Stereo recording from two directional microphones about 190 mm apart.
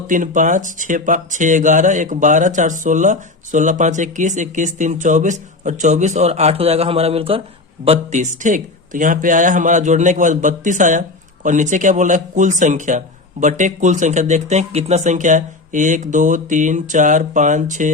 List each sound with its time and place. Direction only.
0.1 s speech: 40° right (ahead or behind)